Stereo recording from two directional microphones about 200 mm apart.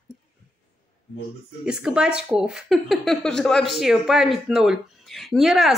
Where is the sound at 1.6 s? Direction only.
5° right (ahead or behind).